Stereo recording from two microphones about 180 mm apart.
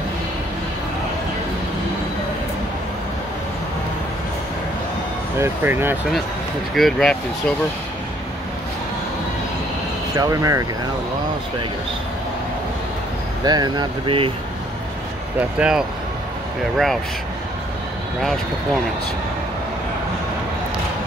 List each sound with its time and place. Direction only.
5.4 s speech: 10° right (ahead or behind)
6.7 s speech: centre (ahead or behind)
10.1 s speech: 15° right (ahead or behind)
13.4 s speech: 20° right (ahead or behind)
15.6 s speech: 5° right (ahead or behind)